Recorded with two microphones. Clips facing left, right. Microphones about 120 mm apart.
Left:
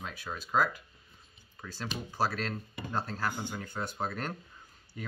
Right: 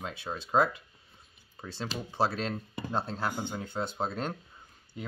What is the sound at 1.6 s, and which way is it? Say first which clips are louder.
Speech: right 2 dB; 15° right (ahead or behind).